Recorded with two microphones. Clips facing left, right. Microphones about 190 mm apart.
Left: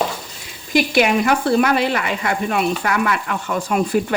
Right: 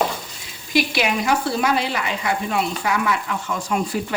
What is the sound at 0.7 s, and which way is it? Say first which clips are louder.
Speech: left 5 dB; 50° left (ahead or behind).